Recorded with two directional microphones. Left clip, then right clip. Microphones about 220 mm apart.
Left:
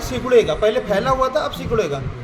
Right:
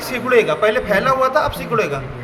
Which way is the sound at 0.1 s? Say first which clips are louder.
Even; 30° left (ahead or behind).